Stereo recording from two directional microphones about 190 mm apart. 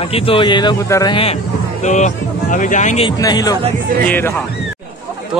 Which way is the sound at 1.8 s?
40° left (ahead or behind).